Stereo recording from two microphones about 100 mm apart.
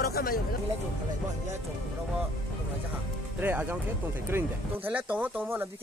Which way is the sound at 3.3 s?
20° right (ahead or behind).